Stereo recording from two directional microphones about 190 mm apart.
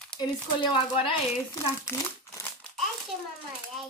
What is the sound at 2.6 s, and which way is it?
Crumpling, 5° left (ahead or behind).